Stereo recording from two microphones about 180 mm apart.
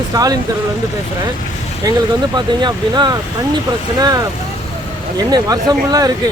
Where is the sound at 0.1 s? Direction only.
20° right (ahead or behind).